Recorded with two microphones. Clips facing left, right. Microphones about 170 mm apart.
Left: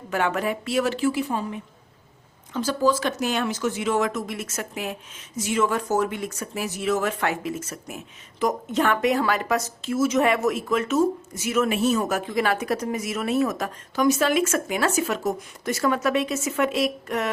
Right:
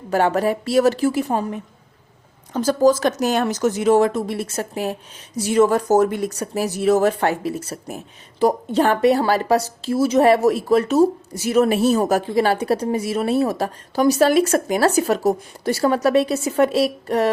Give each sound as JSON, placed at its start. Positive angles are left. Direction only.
{"t": 0.1, "sound": "speech", "side_deg": -35}